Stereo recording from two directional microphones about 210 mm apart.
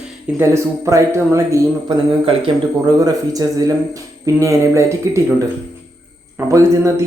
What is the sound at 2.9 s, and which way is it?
Speech, 15° right (ahead or behind).